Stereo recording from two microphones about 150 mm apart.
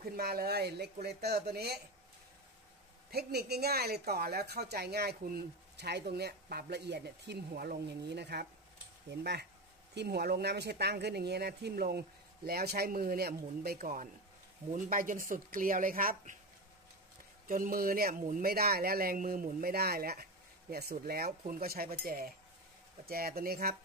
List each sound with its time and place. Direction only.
0.0 s a woman's voice: 85° right
3.1 s a woman's voice: 90° right; by 16.3 s 70° right (ahead or behind)
17.5 s a woman's voice: 70° right (ahead or behind); by 23.8 s 85° right